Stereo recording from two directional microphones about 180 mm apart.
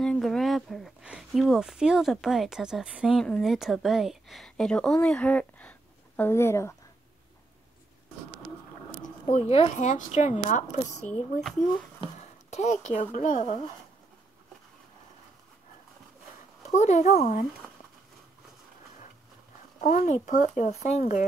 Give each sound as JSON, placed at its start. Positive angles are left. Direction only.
{"t": 0.0, "sound": "speech", "side_deg": 5}
{"t": 9.0, "sound": "speech", "side_deg": 40}
{"t": 12.0, "sound": "a sound", "side_deg": 40}
{"t": 12.8, "sound": "speech", "side_deg": 45}
{"t": 16.7, "sound": "speech", "side_deg": 40}
{"t": 19.8, "sound": "speech", "side_deg": 45}